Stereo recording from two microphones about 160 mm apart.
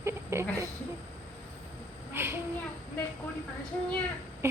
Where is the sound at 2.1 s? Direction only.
15° right (ahead or behind).